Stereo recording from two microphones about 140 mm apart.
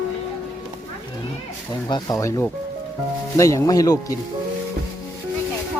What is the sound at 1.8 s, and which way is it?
Speech, 30° left (ahead or behind).